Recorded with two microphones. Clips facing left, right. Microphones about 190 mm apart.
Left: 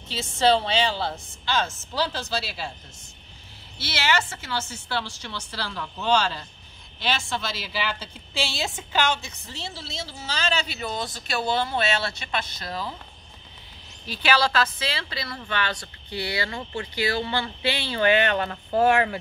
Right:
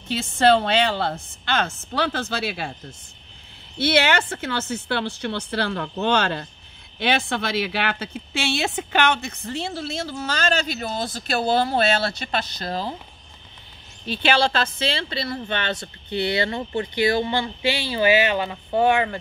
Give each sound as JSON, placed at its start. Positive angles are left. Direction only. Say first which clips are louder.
{"t": 0.1, "sound": "speech", "louder": "right 3 dB", "side_deg": -55}
{"t": 3.7, "sound": "speech", "louder": "right 7 dB", "side_deg": -55}
{"t": 14.0, "sound": "speech", "louder": "right 3 dB", "side_deg": -25}